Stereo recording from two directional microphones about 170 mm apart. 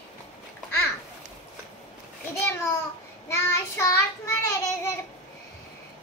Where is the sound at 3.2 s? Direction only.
15° left (ahead or behind).